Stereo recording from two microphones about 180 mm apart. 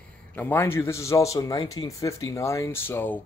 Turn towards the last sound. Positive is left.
turn(degrees=10)  # may be behind; listen again after turning